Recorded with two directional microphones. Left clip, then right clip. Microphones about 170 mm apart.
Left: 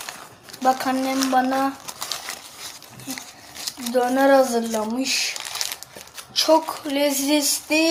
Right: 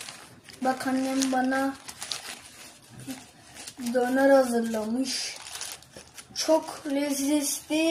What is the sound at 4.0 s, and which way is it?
Speech, 10° left (ahead or behind).